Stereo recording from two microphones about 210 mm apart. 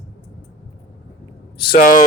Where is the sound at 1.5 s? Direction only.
20° left (ahead or behind).